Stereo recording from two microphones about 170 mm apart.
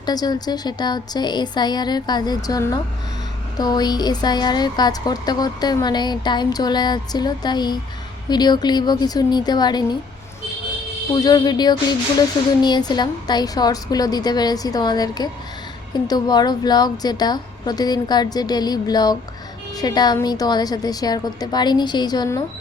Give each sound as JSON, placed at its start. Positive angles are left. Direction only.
{"t": 0.0, "sound": "speech", "side_deg": 25}
{"t": 11.1, "sound": "speech", "side_deg": 25}